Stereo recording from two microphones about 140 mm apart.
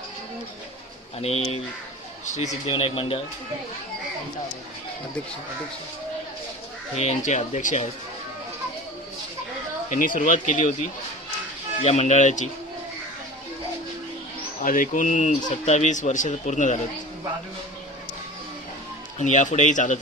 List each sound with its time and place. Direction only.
1.2 s speech: 50° left (ahead or behind)
2.7 s speech: 40° left (ahead or behind)
7.0 s speech: 55° left (ahead or behind)
9.8 s speech: 70° left (ahead or behind)
14.6 s speech: 80° left; by 16.8 s 60° left (ahead or behind)
19.1 s speech: 60° left (ahead or behind)